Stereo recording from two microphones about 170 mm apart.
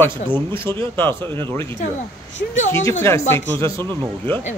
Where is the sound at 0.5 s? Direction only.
15° left (ahead or behind).